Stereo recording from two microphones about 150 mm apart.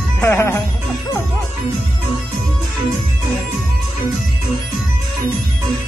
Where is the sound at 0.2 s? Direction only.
20° left (ahead or behind).